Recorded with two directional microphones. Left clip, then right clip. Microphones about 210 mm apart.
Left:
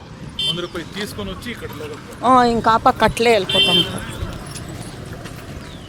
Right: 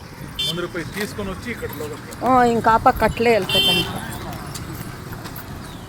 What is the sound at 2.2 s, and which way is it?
Speech, 15° left (ahead or behind).